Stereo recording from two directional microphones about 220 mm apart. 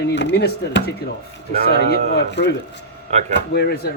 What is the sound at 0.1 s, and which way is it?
A man's voice, 50° left (ahead or behind).